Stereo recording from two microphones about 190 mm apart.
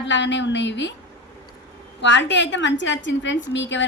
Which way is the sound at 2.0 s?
70° left (ahead or behind).